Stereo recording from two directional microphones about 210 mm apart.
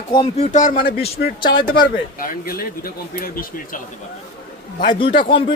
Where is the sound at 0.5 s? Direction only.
40° left (ahead or behind).